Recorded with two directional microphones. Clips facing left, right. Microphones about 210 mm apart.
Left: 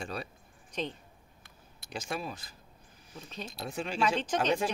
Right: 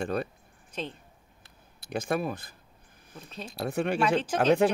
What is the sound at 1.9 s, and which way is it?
Speech, 55° right (ahead or behind).